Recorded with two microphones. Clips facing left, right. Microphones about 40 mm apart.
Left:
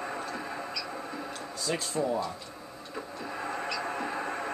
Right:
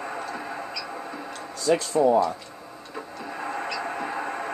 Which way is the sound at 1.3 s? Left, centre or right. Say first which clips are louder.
Right 11 dB; right.